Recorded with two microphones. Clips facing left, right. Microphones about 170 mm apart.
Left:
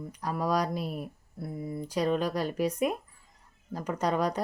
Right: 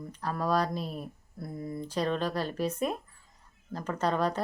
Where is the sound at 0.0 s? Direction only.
10° left (ahead or behind).